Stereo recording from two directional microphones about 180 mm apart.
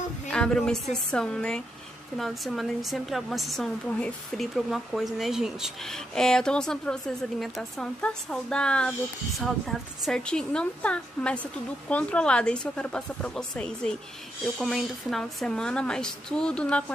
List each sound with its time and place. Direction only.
0.3 s a woman's voice: 5° left (ahead or behind)